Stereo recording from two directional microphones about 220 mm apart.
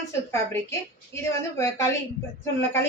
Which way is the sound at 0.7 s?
15° left (ahead or behind).